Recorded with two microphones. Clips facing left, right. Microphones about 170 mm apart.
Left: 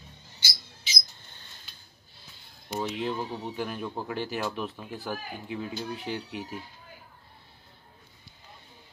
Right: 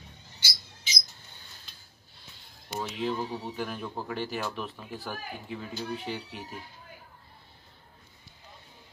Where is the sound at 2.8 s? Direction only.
Centre (ahead or behind).